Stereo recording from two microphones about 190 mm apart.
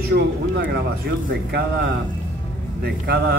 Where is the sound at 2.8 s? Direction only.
55° right (ahead or behind).